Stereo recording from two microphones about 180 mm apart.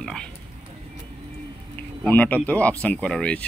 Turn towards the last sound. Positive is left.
turn(degrees=5)  # may be behind; listen again after turning